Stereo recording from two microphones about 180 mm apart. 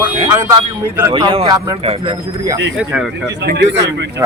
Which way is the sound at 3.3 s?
70° right (ahead or behind).